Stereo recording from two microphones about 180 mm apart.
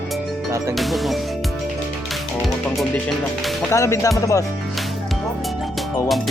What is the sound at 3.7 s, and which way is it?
Speech, 15° left (ahead or behind).